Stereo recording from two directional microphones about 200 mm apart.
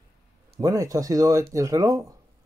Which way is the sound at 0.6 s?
15° right (ahead or behind).